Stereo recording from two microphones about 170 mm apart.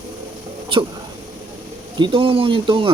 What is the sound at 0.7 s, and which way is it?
Speech, 30° right (ahead or behind).